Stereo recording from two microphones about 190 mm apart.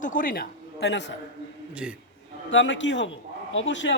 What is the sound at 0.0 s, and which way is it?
Speech, 45° left (ahead or behind).